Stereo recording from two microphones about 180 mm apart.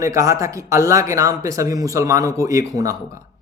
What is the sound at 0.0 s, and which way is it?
Speech, 15° right (ahead or behind).